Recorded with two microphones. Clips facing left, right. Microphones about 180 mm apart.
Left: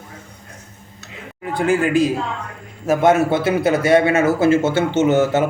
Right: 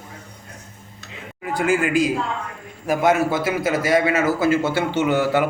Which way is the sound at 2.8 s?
25° left (ahead or behind).